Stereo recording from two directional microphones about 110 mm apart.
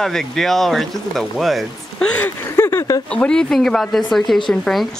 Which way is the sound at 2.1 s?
20° left (ahead or behind).